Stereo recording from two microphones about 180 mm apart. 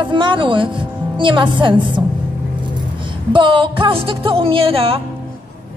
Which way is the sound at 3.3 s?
25° right (ahead or behind).